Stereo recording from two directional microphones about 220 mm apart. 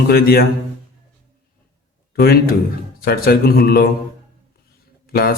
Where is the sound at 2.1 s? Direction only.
45° left (ahead or behind).